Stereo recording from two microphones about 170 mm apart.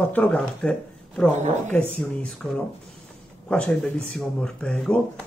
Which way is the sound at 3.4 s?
5° left (ahead or behind).